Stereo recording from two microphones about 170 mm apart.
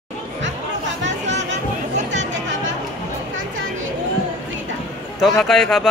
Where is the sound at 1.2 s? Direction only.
45° right (ahead or behind).